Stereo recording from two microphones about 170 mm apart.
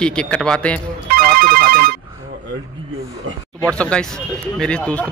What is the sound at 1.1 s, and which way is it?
Ringtone, 60° right (ahead or behind).